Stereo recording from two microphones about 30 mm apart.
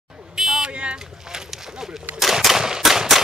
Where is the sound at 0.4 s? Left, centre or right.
Right.